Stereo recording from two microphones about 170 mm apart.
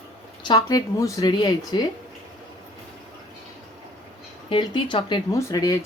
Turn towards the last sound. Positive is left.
turn(degrees=20)  # may be behind; listen again after turning